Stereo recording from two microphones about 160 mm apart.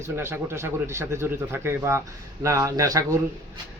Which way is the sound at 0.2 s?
15° right (ahead or behind).